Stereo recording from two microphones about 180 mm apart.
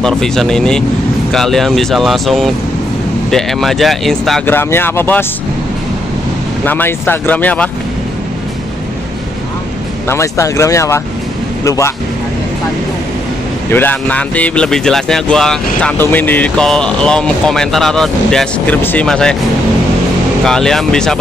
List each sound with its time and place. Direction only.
0.0 s speech: 5° left (ahead or behind)
4.5 s speech: 10° left (ahead or behind)
6.6 s speech: 10° left (ahead or behind)
10.0 s speech: 15° left (ahead or behind)
13.7 s speech: 10° left (ahead or behind)
20.4 s speech: 5° left (ahead or behind)